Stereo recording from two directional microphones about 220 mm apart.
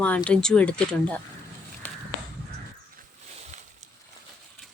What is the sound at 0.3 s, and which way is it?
Speech, 5° left (ahead or behind).